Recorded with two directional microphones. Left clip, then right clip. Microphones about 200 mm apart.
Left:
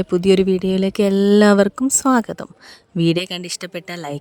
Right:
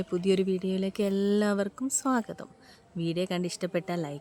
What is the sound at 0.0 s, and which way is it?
Speech, 50° left (ahead or behind).